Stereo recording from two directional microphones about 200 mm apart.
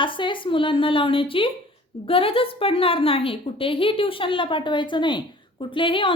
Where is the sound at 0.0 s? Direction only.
25° left (ahead or behind).